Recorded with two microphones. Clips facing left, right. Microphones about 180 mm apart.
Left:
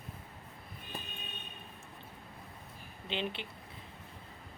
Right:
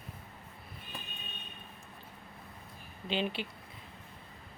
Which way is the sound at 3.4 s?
25° left (ahead or behind).